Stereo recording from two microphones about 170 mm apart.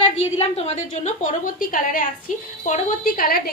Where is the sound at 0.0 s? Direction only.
35° left (ahead or behind).